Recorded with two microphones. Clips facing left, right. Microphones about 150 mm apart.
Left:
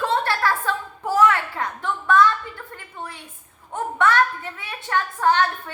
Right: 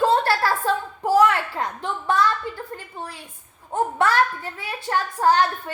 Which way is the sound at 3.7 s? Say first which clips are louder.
Even; 35° right (ahead or behind).